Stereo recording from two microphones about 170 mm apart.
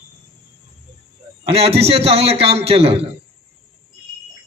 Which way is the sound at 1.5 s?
35° right (ahead or behind).